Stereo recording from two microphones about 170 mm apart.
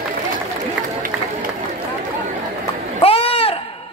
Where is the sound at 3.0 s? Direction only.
35° left (ahead or behind).